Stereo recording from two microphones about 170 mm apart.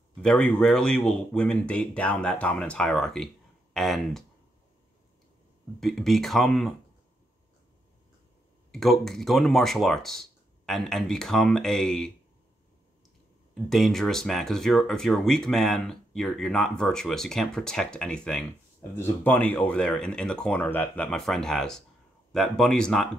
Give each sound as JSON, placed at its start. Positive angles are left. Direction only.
{"t": 0.2, "sound": "speech", "side_deg": 5}
{"t": 5.8, "sound": "speech", "side_deg": 0}
{"t": 8.7, "sound": "speech", "side_deg": 0}
{"t": 13.7, "sound": "speech", "side_deg": 0}